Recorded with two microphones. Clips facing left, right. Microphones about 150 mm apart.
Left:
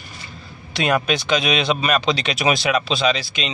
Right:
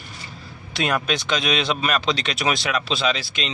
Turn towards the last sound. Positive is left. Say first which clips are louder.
# left 3 dB
turn(degrees=0)  # may be behind; listen again after turning